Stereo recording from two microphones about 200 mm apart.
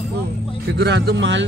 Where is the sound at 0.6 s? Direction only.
55° right (ahead or behind).